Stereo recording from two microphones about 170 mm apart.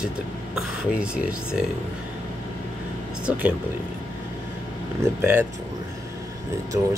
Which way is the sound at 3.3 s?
10° right (ahead or behind).